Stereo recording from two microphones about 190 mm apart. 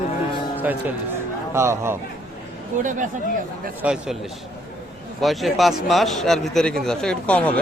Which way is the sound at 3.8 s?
5° right (ahead or behind).